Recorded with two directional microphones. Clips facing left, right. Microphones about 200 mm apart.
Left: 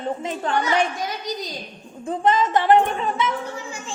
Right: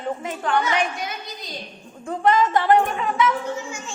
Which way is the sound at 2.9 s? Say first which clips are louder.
Right 2 dB; 35° left (ahead or behind).